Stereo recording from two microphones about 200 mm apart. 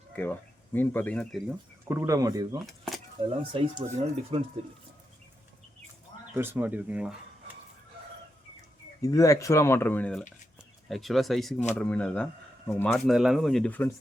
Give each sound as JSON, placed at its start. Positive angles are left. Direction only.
{"t": 0.2, "sound": "speech", "side_deg": 10}
{"t": 1.9, "sound": "speech", "side_deg": -15}
{"t": 2.6, "sound": "a sound", "side_deg": 0}
{"t": 3.2, "sound": "speech", "side_deg": -25}
{"t": 6.3, "sound": "speech", "side_deg": -10}
{"t": 9.0, "sound": "speech", "side_deg": 15}